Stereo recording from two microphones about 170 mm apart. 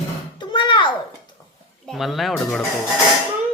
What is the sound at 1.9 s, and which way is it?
Speech, centre (ahead or behind).